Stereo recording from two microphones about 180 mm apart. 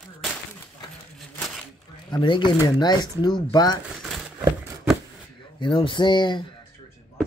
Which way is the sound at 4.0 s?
5° right (ahead or behind).